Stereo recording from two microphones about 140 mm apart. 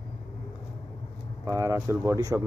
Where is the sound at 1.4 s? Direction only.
25° right (ahead or behind).